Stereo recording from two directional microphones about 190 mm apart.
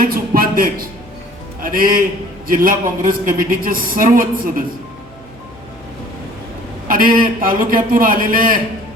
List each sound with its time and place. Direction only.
0.0 s a sound: 50° right (ahead or behind)
1.6 s a man's voice: 50° right (ahead or behind)
6.8 s a man's voice: 50° right (ahead or behind)